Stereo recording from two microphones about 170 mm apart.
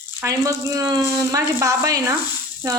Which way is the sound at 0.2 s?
20° right (ahead or behind).